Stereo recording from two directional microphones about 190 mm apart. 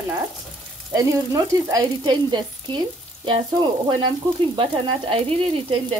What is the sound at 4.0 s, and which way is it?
Frying, 30° right (ahead or behind).